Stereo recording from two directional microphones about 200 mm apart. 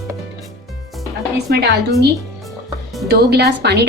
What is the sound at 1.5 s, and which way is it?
Speech, 55° right (ahead or behind).